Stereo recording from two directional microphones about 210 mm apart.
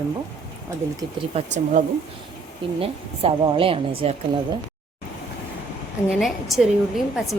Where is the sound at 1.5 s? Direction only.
35° right (ahead or behind).